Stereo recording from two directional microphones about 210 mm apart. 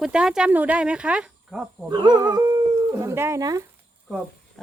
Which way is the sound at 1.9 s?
20° right (ahead or behind).